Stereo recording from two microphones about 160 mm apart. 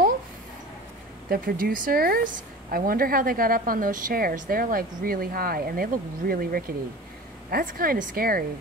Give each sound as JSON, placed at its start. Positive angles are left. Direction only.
{"t": 1.3, "sound": "speech", "side_deg": -60}